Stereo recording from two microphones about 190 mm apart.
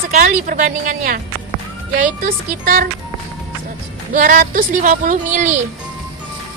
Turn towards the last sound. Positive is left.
turn(degrees=-40)  # may be behind; listen again after turning